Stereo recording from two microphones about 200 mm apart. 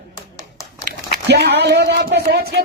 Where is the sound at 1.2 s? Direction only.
55° right (ahead or behind).